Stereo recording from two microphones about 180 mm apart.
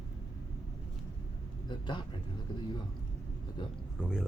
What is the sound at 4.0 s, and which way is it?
Speech, 5° right (ahead or behind).